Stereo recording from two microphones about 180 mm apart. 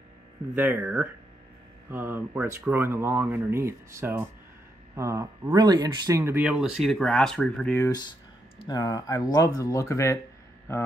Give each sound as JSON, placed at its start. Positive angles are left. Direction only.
{"t": 0.6, "sound": "speech", "side_deg": -10}
{"t": 7.7, "sound": "speech", "side_deg": 20}